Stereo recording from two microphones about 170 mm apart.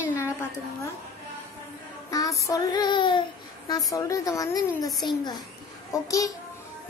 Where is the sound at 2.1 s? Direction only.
20° left (ahead or behind).